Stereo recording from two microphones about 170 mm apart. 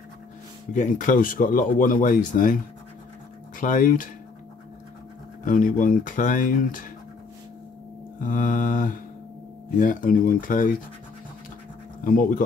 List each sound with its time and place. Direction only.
0.7 s speech: 50° left (ahead or behind)
5.4 s speech: 55° left (ahead or behind)
8.2 s speech: 50° left (ahead or behind)
12.0 s speech: 55° left (ahead or behind)